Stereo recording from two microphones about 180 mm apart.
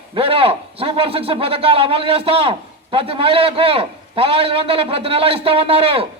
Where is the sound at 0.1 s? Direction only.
30° right (ahead or behind).